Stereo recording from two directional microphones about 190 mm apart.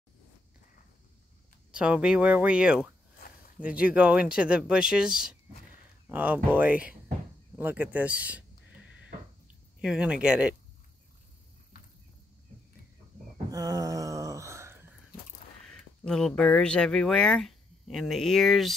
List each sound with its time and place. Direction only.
1.7 s speech: 5° right (ahead or behind)
9.8 s speech: 5° right (ahead or behind)
13.5 s a sound: 20° right (ahead or behind)
15.6 s speech: 5° left (ahead or behind)